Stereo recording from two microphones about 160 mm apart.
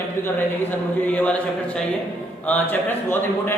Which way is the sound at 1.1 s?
5° left (ahead or behind).